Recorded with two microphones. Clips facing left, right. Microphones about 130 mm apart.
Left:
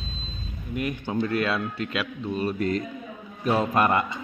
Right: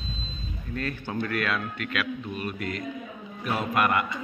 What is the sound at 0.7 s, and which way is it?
A man's voice, 15° left (ahead or behind).